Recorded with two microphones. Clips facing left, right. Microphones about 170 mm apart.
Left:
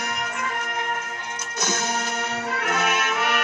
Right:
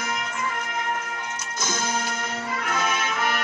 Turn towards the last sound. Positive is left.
turn(degrees=70)  # may be behind; listen again after turning